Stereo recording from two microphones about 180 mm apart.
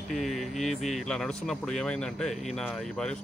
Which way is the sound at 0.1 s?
Centre (ahead or behind).